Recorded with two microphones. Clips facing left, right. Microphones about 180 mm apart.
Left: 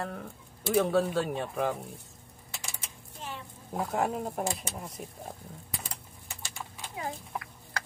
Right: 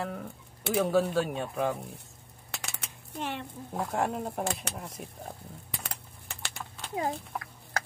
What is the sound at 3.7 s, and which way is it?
Speech, 5° left (ahead or behind).